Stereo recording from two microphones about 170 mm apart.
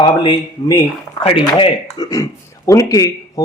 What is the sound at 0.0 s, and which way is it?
Speech, 30° left (ahead or behind).